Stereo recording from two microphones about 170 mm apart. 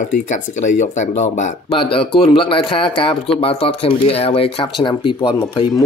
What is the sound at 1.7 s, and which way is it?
Speech, 30° left (ahead or behind).